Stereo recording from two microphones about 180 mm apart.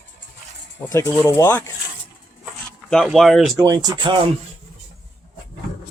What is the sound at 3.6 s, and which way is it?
Speech, 20° right (ahead or behind).